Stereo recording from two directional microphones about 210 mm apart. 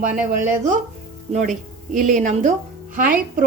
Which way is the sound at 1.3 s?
35° right (ahead or behind).